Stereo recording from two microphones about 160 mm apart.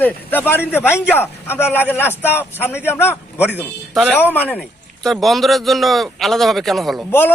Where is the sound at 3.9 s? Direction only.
5° left (ahead or behind).